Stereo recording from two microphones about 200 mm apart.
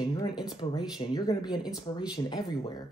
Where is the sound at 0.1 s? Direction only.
20° left (ahead or behind).